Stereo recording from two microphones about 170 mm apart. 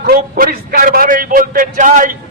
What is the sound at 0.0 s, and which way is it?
A man's voice, 55° right (ahead or behind).